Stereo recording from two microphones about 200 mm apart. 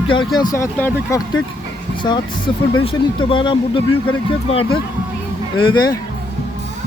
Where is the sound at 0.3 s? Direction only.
15° left (ahead or behind).